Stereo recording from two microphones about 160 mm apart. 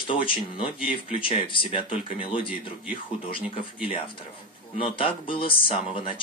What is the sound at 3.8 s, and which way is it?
Speech, 35° left (ahead or behind).